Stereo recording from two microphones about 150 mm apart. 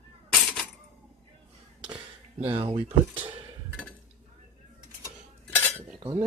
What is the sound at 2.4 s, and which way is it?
Speech, 40° right (ahead or behind).